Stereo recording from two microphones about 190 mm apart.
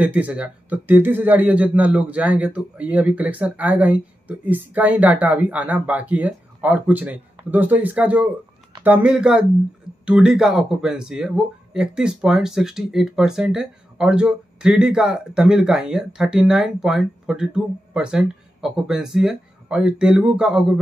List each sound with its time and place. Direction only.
0.0 s speech: 10° right (ahead or behind)